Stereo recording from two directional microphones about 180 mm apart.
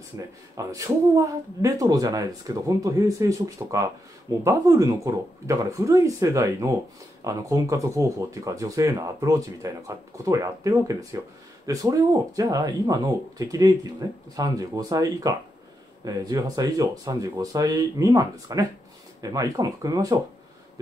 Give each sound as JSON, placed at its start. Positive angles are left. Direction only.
{"t": 0.6, "sound": "speech", "side_deg": -20}